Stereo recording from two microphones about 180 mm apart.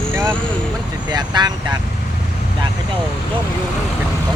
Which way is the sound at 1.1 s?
25° right (ahead or behind).